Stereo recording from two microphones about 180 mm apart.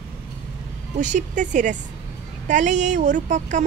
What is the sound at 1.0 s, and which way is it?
A woman's voice, 45° right (ahead or behind).